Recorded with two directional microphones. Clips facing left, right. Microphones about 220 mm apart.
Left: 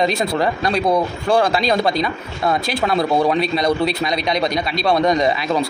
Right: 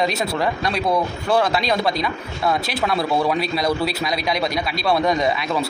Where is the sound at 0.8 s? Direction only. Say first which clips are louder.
Left 2 dB; 20° left (ahead or behind).